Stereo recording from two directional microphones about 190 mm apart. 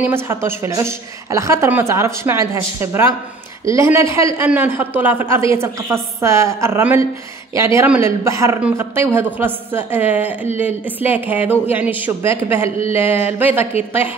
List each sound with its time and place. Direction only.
0.0 s a man's voice: 10° right (ahead or behind)